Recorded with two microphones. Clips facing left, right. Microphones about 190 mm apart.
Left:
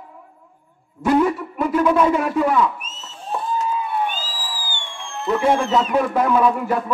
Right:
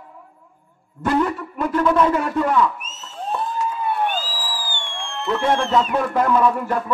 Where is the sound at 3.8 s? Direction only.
45° right (ahead or behind).